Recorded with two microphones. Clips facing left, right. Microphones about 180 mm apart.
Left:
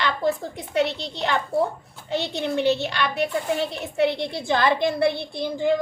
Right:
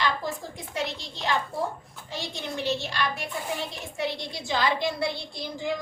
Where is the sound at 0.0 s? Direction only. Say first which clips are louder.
Left 5 dB; 65° left (ahead or behind).